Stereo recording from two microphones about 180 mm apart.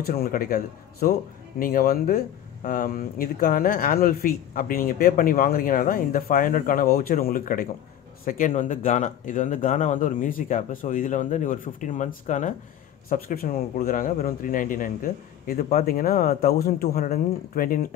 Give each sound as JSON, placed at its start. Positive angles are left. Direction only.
{"t": 0.0, "sound": "speech", "side_deg": 55}